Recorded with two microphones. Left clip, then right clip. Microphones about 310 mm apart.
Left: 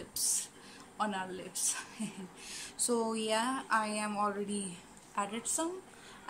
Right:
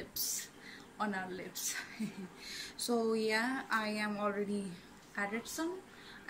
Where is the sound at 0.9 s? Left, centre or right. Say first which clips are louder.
Left 3 dB; centre.